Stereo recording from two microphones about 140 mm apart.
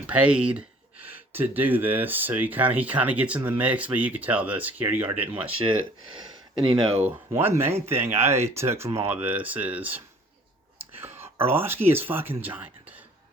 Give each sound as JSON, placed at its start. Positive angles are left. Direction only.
{"t": 0.1, "sound": "speech", "side_deg": -10}
{"t": 6.6, "sound": "speech", "side_deg": -35}
{"t": 7.3, "sound": "speech", "side_deg": -20}
{"t": 11.0, "sound": "a sound", "side_deg": -15}
{"t": 11.9, "sound": "speech", "side_deg": -15}